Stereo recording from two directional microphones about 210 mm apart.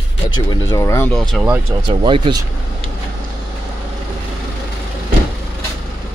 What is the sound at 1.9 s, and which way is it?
Speech, 25° right (ahead or behind).